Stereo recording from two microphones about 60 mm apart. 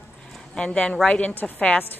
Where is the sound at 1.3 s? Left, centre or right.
Left.